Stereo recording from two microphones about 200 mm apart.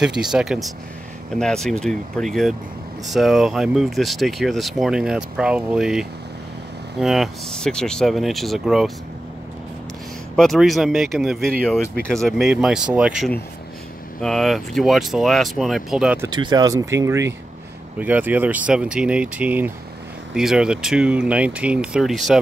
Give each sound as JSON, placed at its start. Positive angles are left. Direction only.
{"t": 0.0, "sound": "speech", "side_deg": -5}
{"t": 10.3, "sound": "speech", "side_deg": 0}
{"t": 16.3, "sound": "speech", "side_deg": -20}